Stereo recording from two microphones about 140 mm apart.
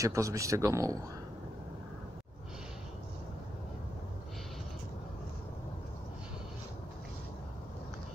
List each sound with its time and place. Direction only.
0.0 s speech: 25° right (ahead or behind)